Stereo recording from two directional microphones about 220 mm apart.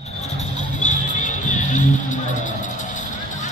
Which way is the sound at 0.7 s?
35° left (ahead or behind).